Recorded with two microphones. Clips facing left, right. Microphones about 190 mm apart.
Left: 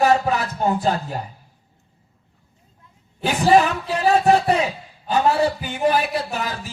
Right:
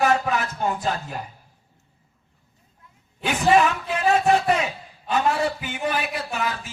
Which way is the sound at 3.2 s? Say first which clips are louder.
Left 3 dB; 35° left (ahead or behind).